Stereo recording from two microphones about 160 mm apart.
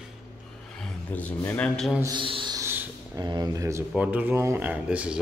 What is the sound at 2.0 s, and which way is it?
Speech, 30° right (ahead or behind).